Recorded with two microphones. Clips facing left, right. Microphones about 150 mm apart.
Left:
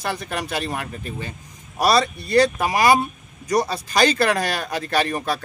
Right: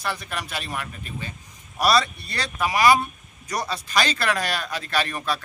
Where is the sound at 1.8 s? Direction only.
40° left (ahead or behind).